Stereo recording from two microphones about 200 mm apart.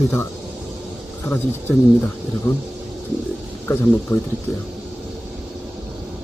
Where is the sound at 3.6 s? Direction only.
10° left (ahead or behind).